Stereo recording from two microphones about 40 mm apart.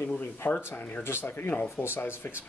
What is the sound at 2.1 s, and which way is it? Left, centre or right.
Speech, left.